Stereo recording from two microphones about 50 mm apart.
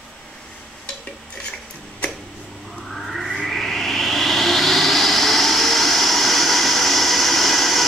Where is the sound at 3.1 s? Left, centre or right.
Centre.